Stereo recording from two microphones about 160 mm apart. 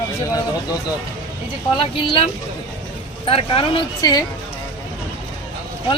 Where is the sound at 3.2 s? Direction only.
35° left (ahead or behind).